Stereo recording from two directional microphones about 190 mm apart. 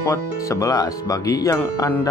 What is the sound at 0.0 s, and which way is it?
Speech, 15° left (ahead or behind).